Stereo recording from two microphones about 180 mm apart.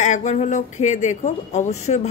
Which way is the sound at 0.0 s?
40° left (ahead or behind).